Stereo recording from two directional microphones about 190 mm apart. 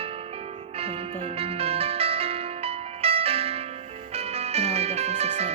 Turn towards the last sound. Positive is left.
turn(degrees=-35)  # may be behind; listen again after turning